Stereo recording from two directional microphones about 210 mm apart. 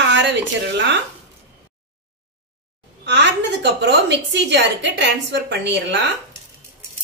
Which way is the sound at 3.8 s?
55° right (ahead or behind).